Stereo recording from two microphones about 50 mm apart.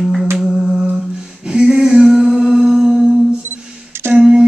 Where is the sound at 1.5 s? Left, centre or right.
Centre.